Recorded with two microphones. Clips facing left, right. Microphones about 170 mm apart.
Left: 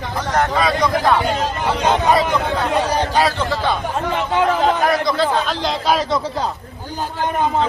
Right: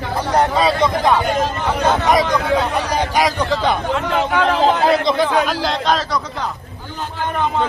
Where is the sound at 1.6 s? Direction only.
15° left (ahead or behind).